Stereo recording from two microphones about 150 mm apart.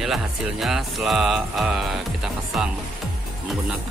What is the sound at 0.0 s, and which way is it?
Music, centre (ahead or behind).